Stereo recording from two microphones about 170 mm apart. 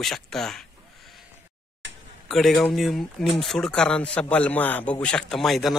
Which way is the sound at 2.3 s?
Centre (ahead or behind).